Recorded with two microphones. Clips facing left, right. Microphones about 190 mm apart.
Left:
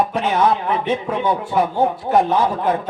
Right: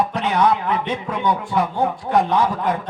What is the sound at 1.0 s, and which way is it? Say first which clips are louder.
A man's voice: left 2 dB; 30° left (ahead or behind).